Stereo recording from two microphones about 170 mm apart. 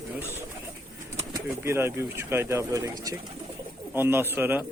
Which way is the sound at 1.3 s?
15° right (ahead or behind).